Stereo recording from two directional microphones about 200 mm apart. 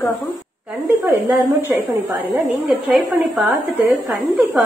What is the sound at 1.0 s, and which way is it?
Speech, 15° right (ahead or behind).